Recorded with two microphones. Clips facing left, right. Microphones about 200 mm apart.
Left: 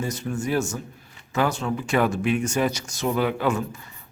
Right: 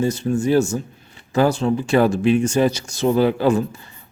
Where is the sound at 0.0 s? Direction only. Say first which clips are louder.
Right 8 dB; 30° right (ahead or behind).